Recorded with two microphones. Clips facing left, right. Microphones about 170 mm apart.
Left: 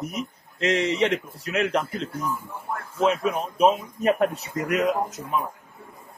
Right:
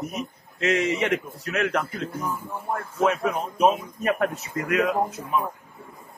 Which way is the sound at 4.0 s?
25° left (ahead or behind).